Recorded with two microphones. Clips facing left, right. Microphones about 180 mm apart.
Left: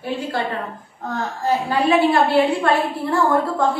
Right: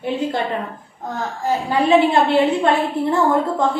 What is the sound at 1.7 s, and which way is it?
A woman's voice, 20° right (ahead or behind).